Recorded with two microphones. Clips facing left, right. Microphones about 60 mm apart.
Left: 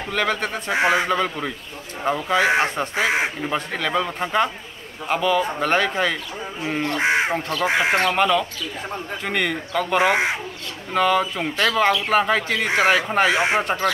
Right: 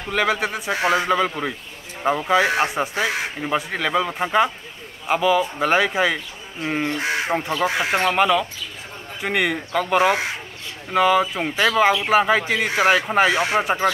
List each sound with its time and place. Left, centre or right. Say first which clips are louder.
0.1 s speech: right 2 dB; centre
0.7 s speech: left 2 dB; left
1.0 s speech: right 2 dB; centre
2.9 s speech: left 2 dB; left
3.4 s speech: right 1 dB; centre
7.0 s speech: left 3 dB; left
7.3 s speech: right 2 dB; centre
7.6 s speech: left 4 dB; left
7.9 s speech: even; centre
13.3 s speech: left 1 dB; left
13.6 s speech: right 2 dB; centre